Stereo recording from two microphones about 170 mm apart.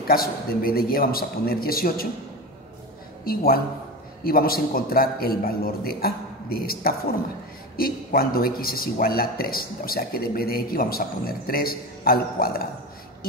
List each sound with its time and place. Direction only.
0.1 s a man's voice: 60° left (ahead or behind)
3.3 s a man's voice: 60° left (ahead or behind)